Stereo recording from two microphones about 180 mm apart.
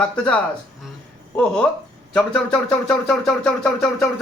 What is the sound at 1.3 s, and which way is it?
Speech, 5° left (ahead or behind).